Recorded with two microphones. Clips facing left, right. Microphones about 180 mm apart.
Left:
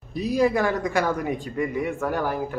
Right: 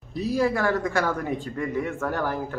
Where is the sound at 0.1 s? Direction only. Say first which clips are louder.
Left 2 dB; 15° left (ahead or behind).